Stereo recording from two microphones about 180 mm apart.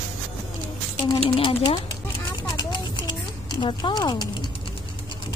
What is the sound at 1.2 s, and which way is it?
Speech, 30° left (ahead or behind).